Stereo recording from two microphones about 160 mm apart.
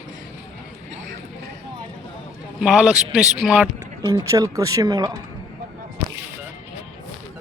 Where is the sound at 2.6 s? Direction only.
Centre (ahead or behind).